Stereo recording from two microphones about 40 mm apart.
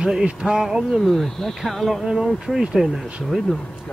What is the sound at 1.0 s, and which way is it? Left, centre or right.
Speech, centre.